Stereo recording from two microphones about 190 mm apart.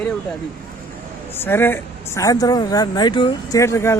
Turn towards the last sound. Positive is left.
turn(degrees=15)  # may be behind; listen again after turning